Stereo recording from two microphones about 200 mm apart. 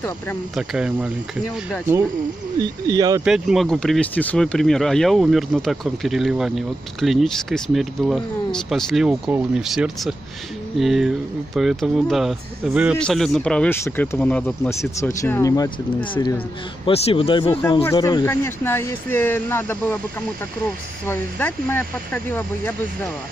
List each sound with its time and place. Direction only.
0.6 s speech: 5° right (ahead or behind)
2.6 s speech: 20° right (ahead or behind)
3.3 s speech: 5° right (ahead or behind)